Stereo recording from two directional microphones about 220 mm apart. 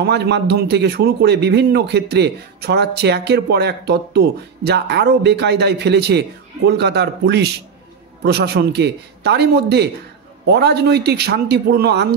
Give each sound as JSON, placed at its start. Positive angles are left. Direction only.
{"t": 0.0, "sound": "a man's voice", "side_deg": -50}